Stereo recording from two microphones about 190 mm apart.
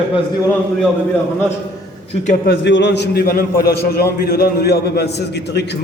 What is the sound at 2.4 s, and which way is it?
A man's voice, 65° left (ahead or behind).